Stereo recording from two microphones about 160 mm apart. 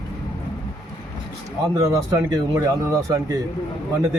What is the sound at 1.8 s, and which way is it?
Speech, 20° right (ahead or behind).